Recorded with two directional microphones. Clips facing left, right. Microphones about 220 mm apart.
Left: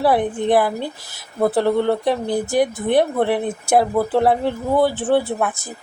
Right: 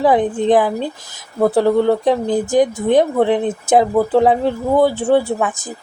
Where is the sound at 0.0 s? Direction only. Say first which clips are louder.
Right 3 dB; 15° right (ahead or behind).